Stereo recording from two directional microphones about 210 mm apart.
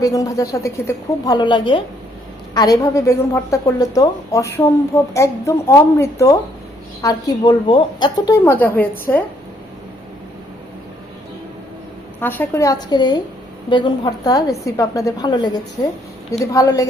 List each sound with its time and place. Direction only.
0.0 s a woman's voice: 15° left (ahead or behind)
12.2 s a woman's voice: 10° left (ahead or behind)